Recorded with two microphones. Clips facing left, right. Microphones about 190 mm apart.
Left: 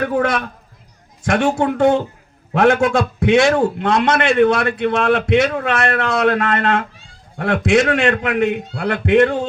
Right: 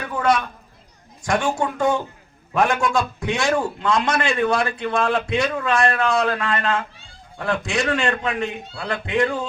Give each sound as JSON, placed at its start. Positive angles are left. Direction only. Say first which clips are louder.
{"t": 0.0, "sound": "a man's voice", "louder": "left 3 dB", "side_deg": 60}